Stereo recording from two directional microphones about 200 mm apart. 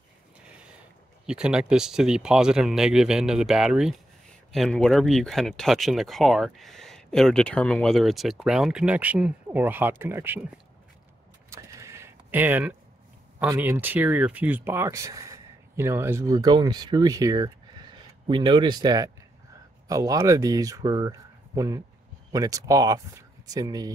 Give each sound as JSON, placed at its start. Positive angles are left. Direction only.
{"t": 1.2, "sound": "speech", "side_deg": -5}
{"t": 11.5, "sound": "vehicle", "side_deg": -15}
{"t": 13.5, "sound": "speech", "side_deg": -10}